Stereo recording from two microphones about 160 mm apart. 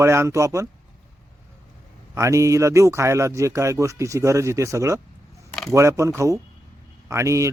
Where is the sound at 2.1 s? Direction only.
20° right (ahead or behind).